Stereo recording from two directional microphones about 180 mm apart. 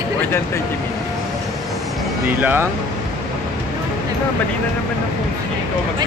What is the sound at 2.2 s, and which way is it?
Speech, 10° right (ahead or behind).